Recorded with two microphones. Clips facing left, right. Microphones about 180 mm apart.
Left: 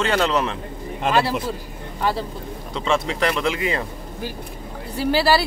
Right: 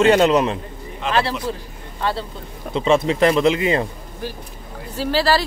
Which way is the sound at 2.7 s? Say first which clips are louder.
Right 6 dB; 20° right (ahead or behind).